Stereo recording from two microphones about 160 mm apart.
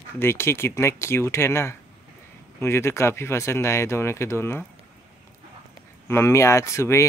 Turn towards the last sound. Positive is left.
turn(degrees=20)  # may be behind; listen again after turning